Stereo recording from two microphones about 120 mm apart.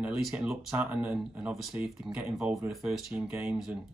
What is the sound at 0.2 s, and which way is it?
Speech, 5° right (ahead or behind).